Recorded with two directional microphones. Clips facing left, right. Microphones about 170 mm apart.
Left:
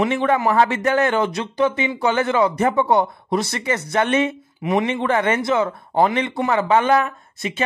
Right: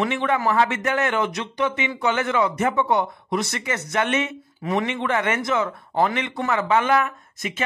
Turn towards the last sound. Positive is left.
turn(degrees=30)  # may be behind; listen again after turning